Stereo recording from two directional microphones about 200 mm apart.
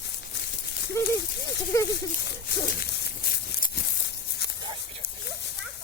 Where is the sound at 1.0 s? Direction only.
10° left (ahead or behind).